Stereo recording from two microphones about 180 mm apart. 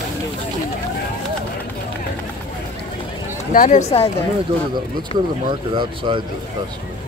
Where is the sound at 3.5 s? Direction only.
45° left (ahead or behind).